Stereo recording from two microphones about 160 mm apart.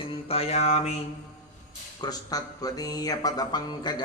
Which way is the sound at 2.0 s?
25° left (ahead or behind).